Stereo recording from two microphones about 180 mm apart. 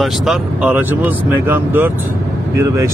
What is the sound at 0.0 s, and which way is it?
Speech, 5° right (ahead or behind).